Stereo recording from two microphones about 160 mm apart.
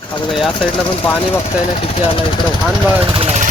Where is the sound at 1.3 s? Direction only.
35° left (ahead or behind).